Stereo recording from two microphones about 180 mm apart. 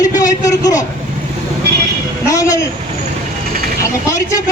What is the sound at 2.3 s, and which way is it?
Speech, 15° left (ahead or behind).